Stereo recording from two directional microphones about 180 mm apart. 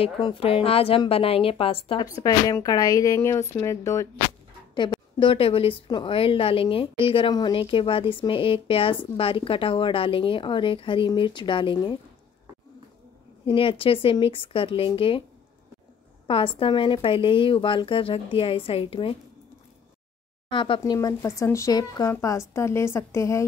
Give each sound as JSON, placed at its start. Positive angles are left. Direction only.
{"t": 0.0, "sound": "a woman's voice", "side_deg": 30}
{"t": 4.7, "sound": "a woman's voice", "side_deg": 25}
{"t": 13.5, "sound": "a woman's voice", "side_deg": 30}
{"t": 16.3, "sound": "a woman's voice", "side_deg": 30}
{"t": 20.4, "sound": "a woman's voice", "side_deg": 30}